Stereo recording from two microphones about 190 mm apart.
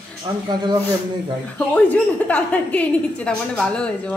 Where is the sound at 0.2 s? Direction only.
25° right (ahead or behind).